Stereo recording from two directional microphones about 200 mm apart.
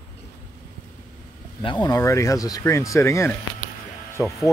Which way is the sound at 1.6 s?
20° left (ahead or behind).